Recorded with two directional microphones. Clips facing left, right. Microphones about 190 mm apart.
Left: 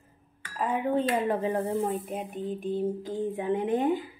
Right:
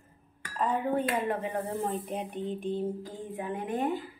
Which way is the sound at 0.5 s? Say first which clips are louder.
Even; 10° left (ahead or behind).